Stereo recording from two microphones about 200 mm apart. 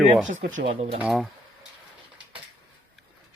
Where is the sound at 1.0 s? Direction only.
Centre (ahead or behind).